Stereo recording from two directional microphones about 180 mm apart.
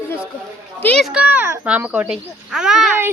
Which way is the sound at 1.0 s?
5° right (ahead or behind).